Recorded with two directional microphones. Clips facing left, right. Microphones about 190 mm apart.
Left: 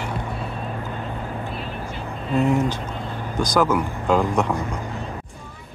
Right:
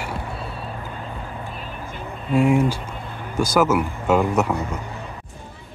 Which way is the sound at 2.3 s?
10° right (ahead or behind).